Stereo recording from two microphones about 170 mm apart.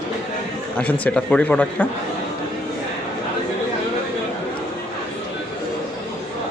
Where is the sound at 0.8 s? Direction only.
10° left (ahead or behind).